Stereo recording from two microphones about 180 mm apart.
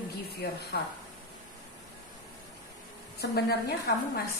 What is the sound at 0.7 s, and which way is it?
Speech, 60° left (ahead or behind).